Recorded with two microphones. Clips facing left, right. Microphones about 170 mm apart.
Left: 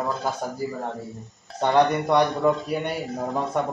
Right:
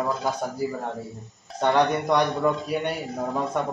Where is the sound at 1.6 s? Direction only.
10° left (ahead or behind).